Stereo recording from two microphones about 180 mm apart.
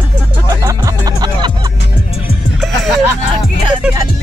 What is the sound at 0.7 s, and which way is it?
Music, 20° right (ahead or behind).